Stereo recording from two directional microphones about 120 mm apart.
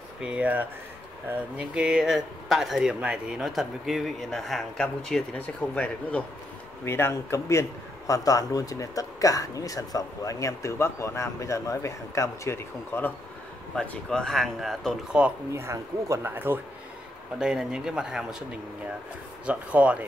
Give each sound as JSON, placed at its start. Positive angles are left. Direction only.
{"t": 0.2, "sound": "speech", "side_deg": -10}
{"t": 6.8, "sound": "speech", "side_deg": 20}
{"t": 13.7, "sound": "speech", "side_deg": 5}
{"t": 15.5, "sound": "speech", "side_deg": -25}
{"t": 17.4, "sound": "speech", "side_deg": -5}
{"t": 19.4, "sound": "speech", "side_deg": -10}